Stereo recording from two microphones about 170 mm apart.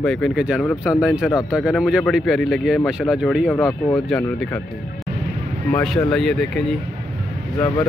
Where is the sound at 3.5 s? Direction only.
15° left (ahead or behind).